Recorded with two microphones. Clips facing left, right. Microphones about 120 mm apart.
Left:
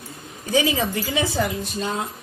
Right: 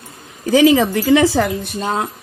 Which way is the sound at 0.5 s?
90° right.